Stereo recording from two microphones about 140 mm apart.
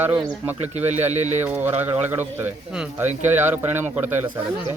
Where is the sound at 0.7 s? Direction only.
50° right (ahead or behind).